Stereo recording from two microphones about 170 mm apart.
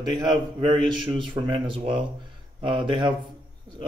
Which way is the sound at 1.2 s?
30° right (ahead or behind).